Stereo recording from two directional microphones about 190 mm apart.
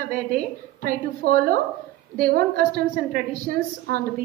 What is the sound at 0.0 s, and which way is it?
A woman's voice, 50° right (ahead or behind).